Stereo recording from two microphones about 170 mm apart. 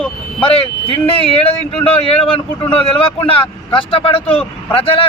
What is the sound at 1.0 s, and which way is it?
Speech, 35° left (ahead or behind).